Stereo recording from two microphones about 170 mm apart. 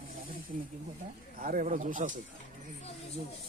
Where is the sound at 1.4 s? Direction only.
50° right (ahead or behind).